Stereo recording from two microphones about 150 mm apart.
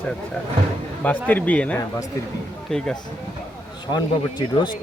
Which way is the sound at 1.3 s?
10° left (ahead or behind).